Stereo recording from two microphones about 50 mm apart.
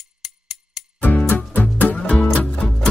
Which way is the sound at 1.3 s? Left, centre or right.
Left.